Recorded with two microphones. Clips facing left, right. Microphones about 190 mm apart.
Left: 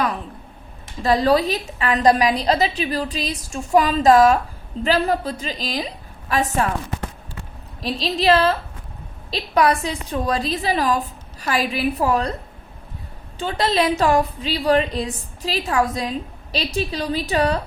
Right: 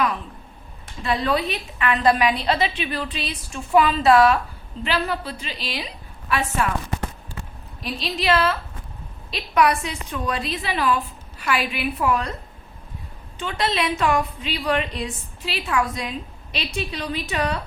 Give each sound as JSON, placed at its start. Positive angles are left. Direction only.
{"t": 1.0, "sound": "a woman's voice", "side_deg": 35}
{"t": 7.8, "sound": "a woman's voice", "side_deg": 35}
{"t": 13.4, "sound": "a woman's voice", "side_deg": 35}